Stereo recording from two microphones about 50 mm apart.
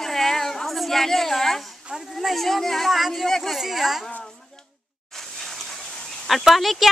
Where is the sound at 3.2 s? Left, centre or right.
Centre.